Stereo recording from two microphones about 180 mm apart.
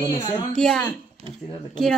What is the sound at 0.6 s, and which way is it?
Speech, 5° left (ahead or behind).